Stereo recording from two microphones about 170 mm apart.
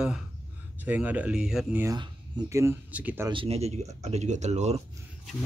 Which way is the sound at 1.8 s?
20° right (ahead or behind).